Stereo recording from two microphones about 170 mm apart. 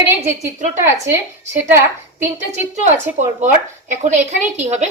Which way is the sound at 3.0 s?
45° right (ahead or behind).